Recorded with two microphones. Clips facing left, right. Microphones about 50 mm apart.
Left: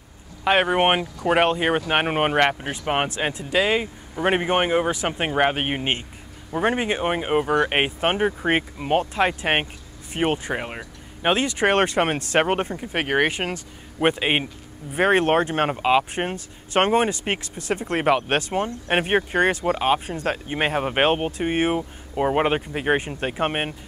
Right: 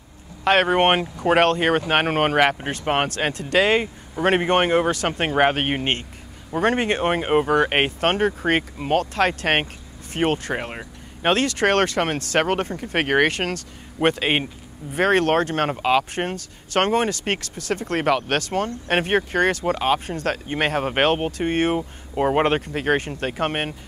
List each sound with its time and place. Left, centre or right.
0.7 s speech: centre
7.7 s speech: centre
8.9 s speech: centre
11.3 s speech: centre
12.9 s speech: centre
13.3 s speech: centre
22.1 s speech: centre